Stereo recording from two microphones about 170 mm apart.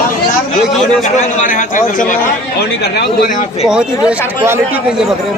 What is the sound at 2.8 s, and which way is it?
Speech, 75° left (ahead or behind).